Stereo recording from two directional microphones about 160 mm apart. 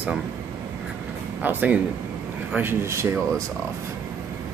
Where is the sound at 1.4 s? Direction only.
10° right (ahead or behind).